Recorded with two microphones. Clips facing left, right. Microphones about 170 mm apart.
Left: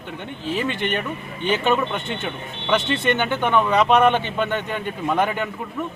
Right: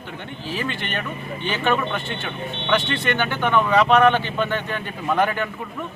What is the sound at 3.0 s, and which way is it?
Speech, 20° left (ahead or behind).